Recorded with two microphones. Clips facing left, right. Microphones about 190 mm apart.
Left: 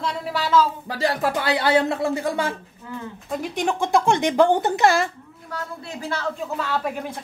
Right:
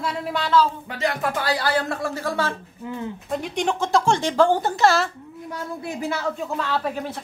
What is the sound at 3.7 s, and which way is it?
Speech, 15° left (ahead or behind).